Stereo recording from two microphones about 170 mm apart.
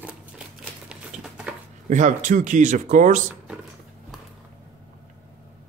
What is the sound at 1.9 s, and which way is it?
Speech, 45° right (ahead or behind).